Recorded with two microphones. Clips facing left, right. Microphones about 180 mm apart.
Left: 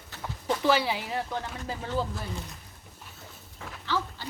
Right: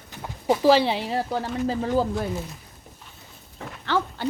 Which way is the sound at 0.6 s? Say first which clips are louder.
Right 7 dB; 30° right (ahead or behind).